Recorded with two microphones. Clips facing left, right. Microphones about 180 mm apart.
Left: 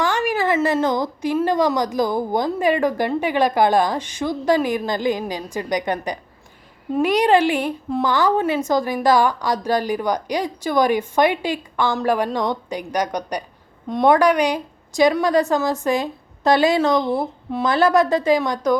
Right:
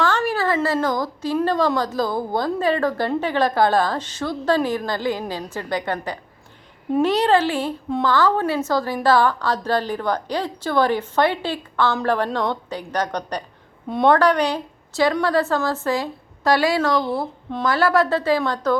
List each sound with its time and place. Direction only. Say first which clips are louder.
0.0 s a sound: left 1 dB; 15° left (ahead or behind)
1.5 s a woman's voice: left 1 dB; 15° left (ahead or behind)
13.8 s a woman's voice: left 1 dB; 5° right (ahead or behind)
14.1 s a woman's voice: left 1 dB; 10° left (ahead or behind)